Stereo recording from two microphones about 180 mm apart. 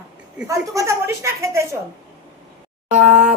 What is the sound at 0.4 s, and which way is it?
Speech, 15° right (ahead or behind).